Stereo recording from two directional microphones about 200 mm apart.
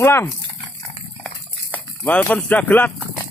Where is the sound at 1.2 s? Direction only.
5° left (ahead or behind).